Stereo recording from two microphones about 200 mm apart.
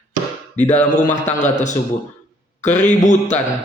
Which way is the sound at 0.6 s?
35° left (ahead or behind).